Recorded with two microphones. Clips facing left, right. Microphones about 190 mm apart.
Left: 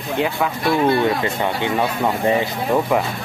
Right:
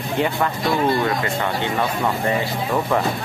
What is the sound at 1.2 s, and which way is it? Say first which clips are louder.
Speech: left 2 dB; 15° left (ahead or behind).